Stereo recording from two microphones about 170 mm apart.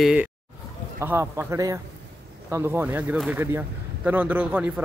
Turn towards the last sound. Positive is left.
turn(degrees=-5)  # may be behind; listen again after turning